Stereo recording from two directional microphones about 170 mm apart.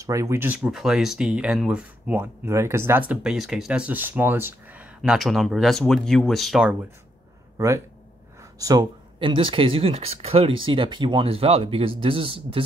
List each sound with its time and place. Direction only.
0.0 s speech: 20° right (ahead or behind)
0.7 s speech: 5° right (ahead or behind)
7.5 s speech: 15° right (ahead or behind)